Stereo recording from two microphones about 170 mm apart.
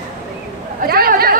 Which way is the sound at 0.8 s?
60° right (ahead or behind).